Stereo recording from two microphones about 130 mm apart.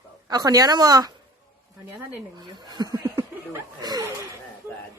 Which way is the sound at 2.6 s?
30° right (ahead or behind).